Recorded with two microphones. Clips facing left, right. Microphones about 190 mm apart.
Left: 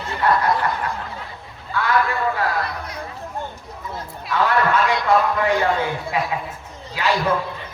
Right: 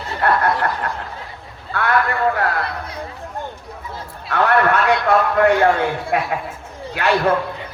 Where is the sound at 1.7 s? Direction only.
60° right (ahead or behind).